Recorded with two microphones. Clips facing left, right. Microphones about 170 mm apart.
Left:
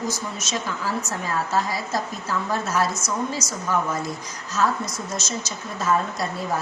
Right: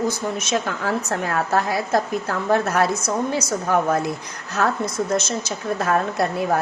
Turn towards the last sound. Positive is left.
turn(degrees=-60)  # may be behind; listen again after turning